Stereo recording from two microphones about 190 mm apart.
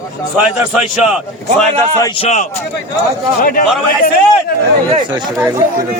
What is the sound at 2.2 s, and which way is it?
A man's voice, 40° left (ahead or behind).